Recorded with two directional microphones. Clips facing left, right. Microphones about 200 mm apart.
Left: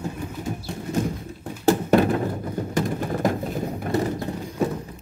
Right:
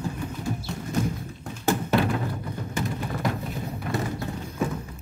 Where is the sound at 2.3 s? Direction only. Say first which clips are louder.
Left 5 dB; 45° left (ahead or behind).